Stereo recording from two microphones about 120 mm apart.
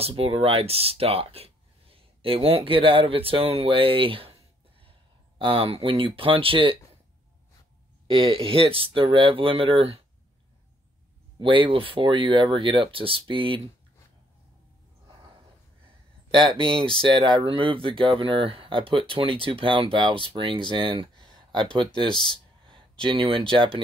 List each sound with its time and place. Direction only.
0.0 s speech: 55° right (ahead or behind)
8.1 s speech: 45° right (ahead or behind)
11.3 s speech: 45° right (ahead or behind)
16.3 s speech: 45° right (ahead or behind)
22.1 s speech: 40° left (ahead or behind)
23.0 s speech: 45° right (ahead or behind)